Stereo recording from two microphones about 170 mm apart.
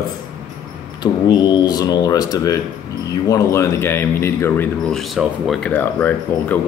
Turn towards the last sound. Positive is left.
turn(degrees=10)  # may be behind; listen again after turning